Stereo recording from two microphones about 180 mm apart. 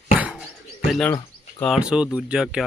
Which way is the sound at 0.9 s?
Centre (ahead or behind).